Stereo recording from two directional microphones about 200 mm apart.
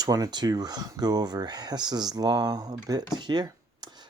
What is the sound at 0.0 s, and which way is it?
Speech, 20° right (ahead or behind).